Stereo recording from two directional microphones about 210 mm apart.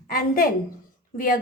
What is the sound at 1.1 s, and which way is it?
Speech, 40° left (ahead or behind).